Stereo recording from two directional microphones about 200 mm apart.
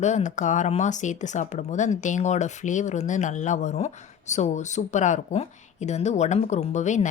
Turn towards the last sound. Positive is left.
turn(degrees=35)  # may be behind; listen again after turning